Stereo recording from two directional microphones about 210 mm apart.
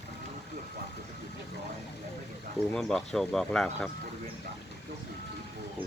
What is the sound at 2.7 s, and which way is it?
Speech, 5° left (ahead or behind).